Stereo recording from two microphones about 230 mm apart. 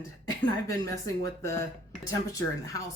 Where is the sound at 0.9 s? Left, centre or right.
Centre.